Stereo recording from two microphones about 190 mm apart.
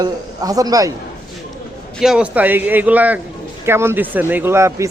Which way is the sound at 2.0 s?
5° right (ahead or behind).